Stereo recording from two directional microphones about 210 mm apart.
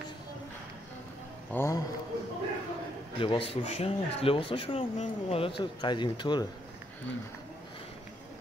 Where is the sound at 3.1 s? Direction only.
25° left (ahead or behind).